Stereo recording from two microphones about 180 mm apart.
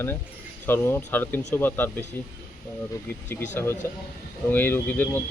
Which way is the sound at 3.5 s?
15° left (ahead or behind).